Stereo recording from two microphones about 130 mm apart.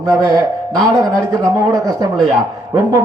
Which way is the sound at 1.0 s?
25° right (ahead or behind).